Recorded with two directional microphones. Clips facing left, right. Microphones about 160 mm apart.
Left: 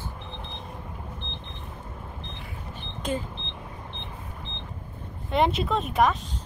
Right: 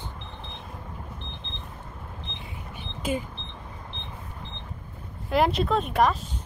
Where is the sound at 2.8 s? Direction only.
10° right (ahead or behind).